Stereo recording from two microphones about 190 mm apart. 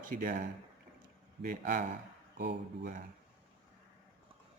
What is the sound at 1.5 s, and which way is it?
Speech, 45° right (ahead or behind).